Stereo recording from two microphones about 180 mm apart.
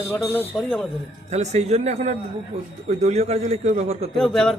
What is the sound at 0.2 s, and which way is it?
Speech, 10° left (ahead or behind).